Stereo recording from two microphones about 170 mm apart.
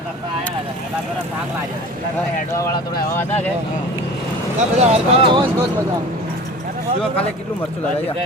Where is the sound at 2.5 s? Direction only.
20° left (ahead or behind).